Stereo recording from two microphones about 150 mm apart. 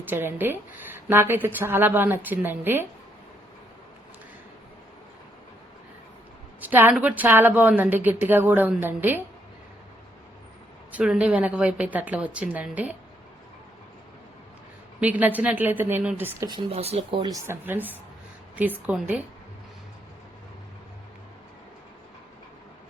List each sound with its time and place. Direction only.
0.0 s speech: 15° right (ahead or behind)
6.6 s a sound: 10° right (ahead or behind)
7.0 s speech: 10° right (ahead or behind)
10.9 s speech: 5° right (ahead or behind)
15.0 s speech: 10° right (ahead or behind)
16.5 s speech: 35° right (ahead or behind)
17.2 s speech: 25° right (ahead or behind); by 19.2 s 5° right (ahead or behind)